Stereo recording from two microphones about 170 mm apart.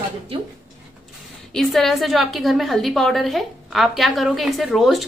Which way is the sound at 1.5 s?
Centre (ahead or behind).